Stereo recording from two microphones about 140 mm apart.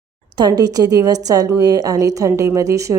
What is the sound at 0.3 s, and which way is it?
A woman's voice, 30° right (ahead or behind).